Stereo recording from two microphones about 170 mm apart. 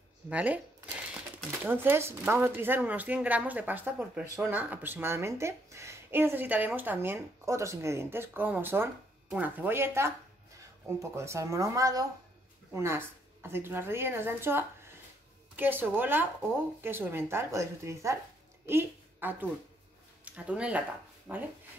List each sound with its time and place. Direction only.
0.3 s speech: 10° right (ahead or behind)
1.6 s speech: 10° right (ahead or behind)
18.7 s a sound: 15° right (ahead or behind)
20.2 s speech: 10° right (ahead or behind)